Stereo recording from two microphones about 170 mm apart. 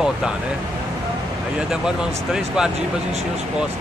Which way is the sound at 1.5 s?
5° right (ahead or behind).